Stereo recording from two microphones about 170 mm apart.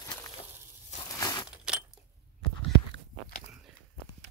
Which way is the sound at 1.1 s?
20° left (ahead or behind).